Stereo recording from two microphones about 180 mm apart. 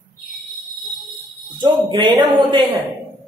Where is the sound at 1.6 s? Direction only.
25° right (ahead or behind).